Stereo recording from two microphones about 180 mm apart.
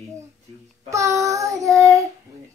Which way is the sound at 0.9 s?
15° right (ahead or behind).